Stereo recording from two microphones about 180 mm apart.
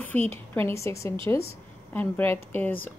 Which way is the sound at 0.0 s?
10° left (ahead or behind).